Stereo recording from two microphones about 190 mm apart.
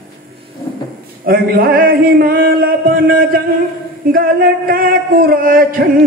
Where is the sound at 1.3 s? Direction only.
50° right (ahead or behind).